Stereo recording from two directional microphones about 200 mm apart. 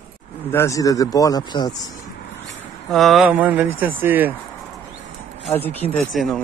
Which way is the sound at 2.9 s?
Centre (ahead or behind).